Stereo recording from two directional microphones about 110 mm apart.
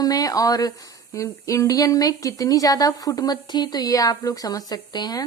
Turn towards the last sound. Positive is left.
turn(degrees=40)  # may be behind; listen again after turning